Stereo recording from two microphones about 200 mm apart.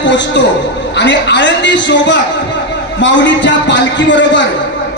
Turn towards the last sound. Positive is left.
turn(degrees=65)  # may be behind; listen again after turning